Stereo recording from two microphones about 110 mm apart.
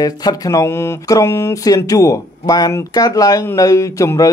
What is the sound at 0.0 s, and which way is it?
Speech, 35° left (ahead or behind).